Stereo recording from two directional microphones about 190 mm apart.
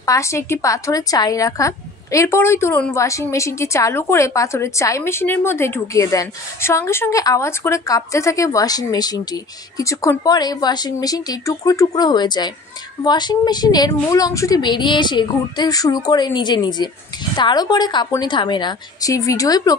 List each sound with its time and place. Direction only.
0.0 s a woman's voice: 15° left (ahead or behind)